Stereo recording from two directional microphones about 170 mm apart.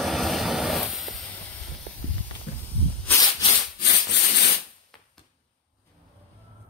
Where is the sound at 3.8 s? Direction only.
75° left (ahead or behind).